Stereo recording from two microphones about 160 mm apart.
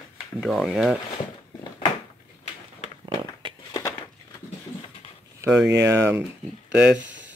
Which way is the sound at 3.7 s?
20° left (ahead or behind).